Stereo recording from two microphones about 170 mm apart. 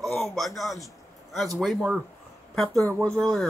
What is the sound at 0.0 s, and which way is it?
A man's voice, centre (ahead or behind).